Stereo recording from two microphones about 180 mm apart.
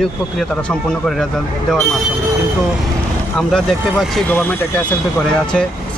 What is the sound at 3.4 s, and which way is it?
Speech, centre (ahead or behind).